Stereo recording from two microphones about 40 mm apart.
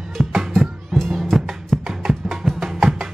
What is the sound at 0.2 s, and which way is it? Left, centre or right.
Music, centre.